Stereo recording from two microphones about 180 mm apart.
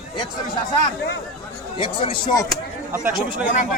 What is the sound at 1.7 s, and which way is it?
Speech, 30° left (ahead or behind).